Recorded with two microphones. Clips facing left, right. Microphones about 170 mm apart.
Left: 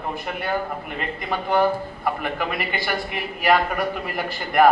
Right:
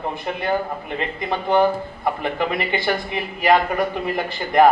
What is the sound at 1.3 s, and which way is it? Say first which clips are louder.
Speech: right 2 dB; 20° right (ahead or behind).